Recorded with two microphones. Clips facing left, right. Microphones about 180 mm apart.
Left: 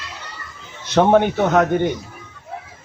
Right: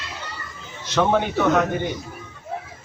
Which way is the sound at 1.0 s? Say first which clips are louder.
Left 5 dB; 55° left (ahead or behind).